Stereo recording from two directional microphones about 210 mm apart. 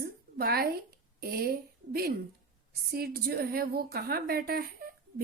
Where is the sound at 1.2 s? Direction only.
45° right (ahead or behind).